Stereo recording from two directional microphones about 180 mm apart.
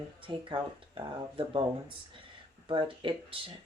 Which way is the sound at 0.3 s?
30° right (ahead or behind).